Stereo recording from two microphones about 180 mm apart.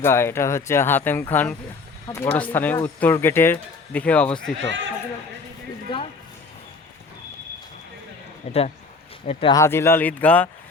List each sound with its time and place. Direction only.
0.0 s speech: 15° left (ahead or behind)
4.6 s speech: 85° right
5.9 s music: 25° left (ahead or behind)
8.4 s speech: 35° left (ahead or behind)
9.6 s speech: 15° left (ahead or behind)